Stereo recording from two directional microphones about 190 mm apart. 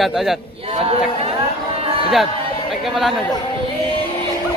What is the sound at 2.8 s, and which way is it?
Speech, centre (ahead or behind).